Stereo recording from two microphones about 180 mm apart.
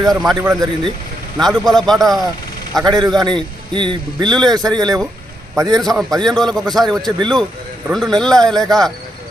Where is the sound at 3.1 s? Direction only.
25° right (ahead or behind).